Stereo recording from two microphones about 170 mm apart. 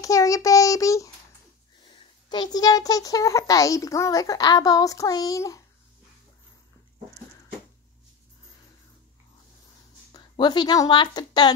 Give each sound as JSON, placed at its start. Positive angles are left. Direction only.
{"t": 0.0, "sound": "child singing", "side_deg": 20}
{"t": 2.0, "sound": "a child's voice", "side_deg": 25}
{"t": 10.1, "sound": "speech", "side_deg": 25}